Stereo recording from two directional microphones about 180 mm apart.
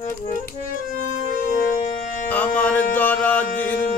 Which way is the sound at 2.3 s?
10° left (ahead or behind).